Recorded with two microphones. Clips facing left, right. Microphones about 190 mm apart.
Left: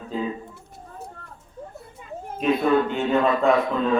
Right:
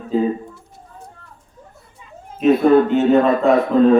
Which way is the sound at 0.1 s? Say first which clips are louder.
Right 10 dB; 45° right (ahead or behind).